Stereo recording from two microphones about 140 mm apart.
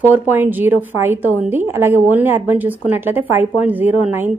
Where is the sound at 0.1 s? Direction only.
15° right (ahead or behind).